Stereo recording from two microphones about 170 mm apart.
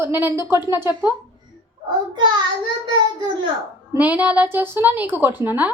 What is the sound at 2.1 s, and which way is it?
Child singing, 25° right (ahead or behind).